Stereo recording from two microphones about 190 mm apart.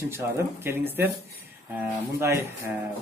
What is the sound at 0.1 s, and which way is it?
Speech, 10° right (ahead or behind).